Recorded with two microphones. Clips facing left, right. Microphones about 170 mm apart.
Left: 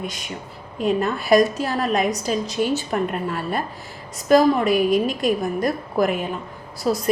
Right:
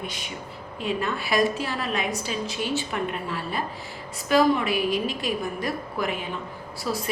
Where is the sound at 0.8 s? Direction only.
45° left (ahead or behind).